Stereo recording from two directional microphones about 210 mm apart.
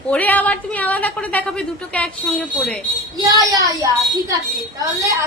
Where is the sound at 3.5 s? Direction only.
15° right (ahead or behind).